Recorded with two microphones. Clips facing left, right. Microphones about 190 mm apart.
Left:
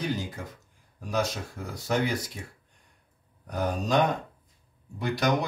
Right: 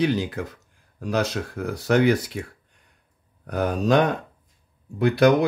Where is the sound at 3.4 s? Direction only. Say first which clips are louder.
Right 7 dB; 65° right (ahead or behind).